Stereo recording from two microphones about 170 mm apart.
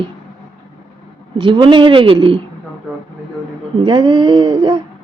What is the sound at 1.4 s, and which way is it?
Speech, 30° right (ahead or behind).